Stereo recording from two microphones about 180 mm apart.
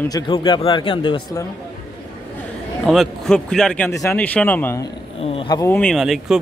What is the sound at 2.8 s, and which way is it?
Speech, centre (ahead or behind).